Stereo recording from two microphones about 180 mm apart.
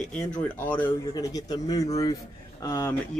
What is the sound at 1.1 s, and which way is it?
A man's voice, 20° left (ahead or behind).